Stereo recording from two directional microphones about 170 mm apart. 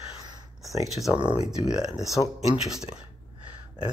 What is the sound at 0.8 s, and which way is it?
Speech, centre (ahead or behind).